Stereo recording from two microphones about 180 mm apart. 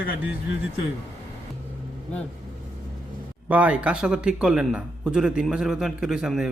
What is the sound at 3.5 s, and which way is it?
A man's voice, 5° right (ahead or behind).